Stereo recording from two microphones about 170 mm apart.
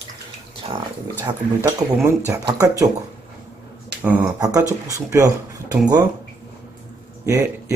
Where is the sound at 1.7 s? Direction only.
20° right (ahead or behind).